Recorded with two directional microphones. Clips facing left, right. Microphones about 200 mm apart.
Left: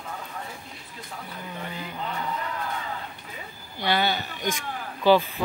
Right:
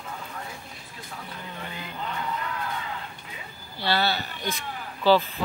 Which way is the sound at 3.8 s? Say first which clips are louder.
Left 1 dB; 15° left (ahead or behind).